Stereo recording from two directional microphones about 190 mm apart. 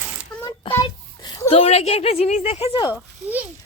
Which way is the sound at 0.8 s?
25° left (ahead or behind).